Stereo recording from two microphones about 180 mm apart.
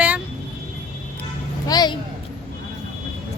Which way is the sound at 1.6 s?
20° left (ahead or behind).